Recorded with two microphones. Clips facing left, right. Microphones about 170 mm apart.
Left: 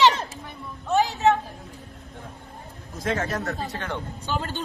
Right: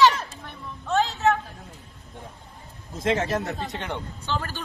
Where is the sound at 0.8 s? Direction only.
15° left (ahead or behind).